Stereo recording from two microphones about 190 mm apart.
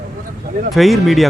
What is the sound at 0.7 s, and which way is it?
Speech, centre (ahead or behind).